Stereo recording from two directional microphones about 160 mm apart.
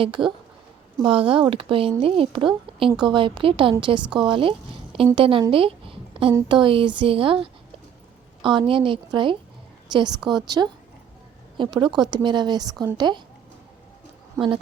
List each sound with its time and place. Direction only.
0.0 s a woman's voice: 30° right (ahead or behind)
8.4 s a woman's voice: 30° right (ahead or behind)
14.4 s a woman's voice: 20° right (ahead or behind)